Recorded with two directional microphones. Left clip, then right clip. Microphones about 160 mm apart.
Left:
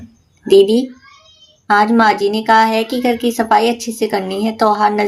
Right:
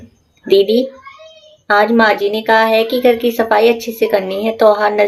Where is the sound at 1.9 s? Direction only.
25° left (ahead or behind).